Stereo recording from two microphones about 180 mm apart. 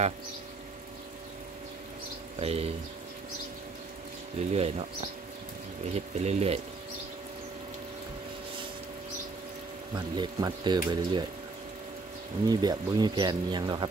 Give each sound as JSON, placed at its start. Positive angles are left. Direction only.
{"t": 2.4, "sound": "speech", "side_deg": -35}
{"t": 4.4, "sound": "speech", "side_deg": -35}
{"t": 5.9, "sound": "speech", "side_deg": -35}
{"t": 9.9, "sound": "speech", "side_deg": -25}
{"t": 12.4, "sound": "speech", "side_deg": -20}